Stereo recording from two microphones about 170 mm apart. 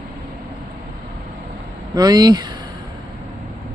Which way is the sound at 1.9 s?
25° right (ahead or behind).